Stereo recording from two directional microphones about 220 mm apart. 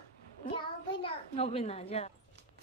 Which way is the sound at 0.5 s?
25° left (ahead or behind).